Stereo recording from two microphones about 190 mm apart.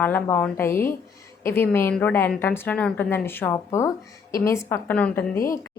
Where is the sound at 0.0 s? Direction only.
10° left (ahead or behind).